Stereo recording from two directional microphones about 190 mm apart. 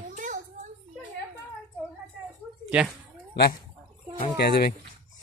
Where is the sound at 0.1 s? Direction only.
40° right (ahead or behind).